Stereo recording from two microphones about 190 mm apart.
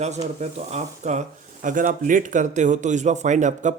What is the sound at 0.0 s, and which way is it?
Speech, 35° right (ahead or behind).